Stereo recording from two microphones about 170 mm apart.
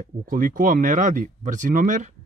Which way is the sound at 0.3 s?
55° right (ahead or behind).